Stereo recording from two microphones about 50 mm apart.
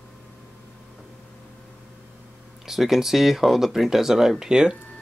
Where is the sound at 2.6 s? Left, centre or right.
Centre.